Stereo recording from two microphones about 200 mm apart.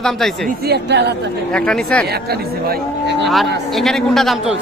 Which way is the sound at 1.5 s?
5° left (ahead or behind).